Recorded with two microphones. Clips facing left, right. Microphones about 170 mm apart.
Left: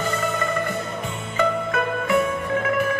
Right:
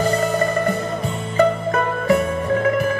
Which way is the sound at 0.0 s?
40° right (ahead or behind).